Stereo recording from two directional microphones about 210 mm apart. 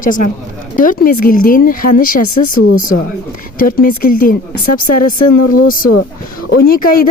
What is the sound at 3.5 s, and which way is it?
Speech, 40° left (ahead or behind).